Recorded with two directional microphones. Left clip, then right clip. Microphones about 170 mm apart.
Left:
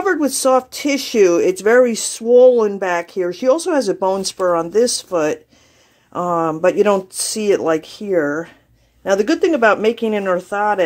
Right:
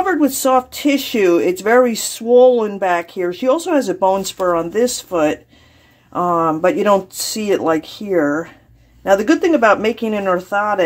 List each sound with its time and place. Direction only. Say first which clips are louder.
0.0 s speech: right 1 dB; 45° left (ahead or behind)